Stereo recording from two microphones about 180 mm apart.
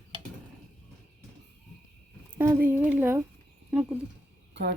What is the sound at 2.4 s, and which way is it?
Speech, 10° right (ahead or behind).